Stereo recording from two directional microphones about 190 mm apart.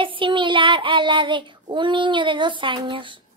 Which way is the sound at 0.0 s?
25° right (ahead or behind).